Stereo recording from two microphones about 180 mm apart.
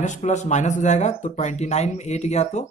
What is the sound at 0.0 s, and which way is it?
Speech, 40° left (ahead or behind).